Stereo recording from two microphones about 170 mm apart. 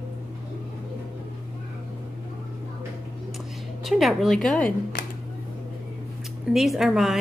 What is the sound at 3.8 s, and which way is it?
Speech, centre (ahead or behind).